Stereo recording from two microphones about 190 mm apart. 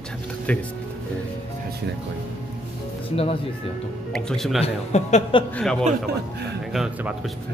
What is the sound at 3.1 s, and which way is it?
Speech, 30° left (ahead or behind).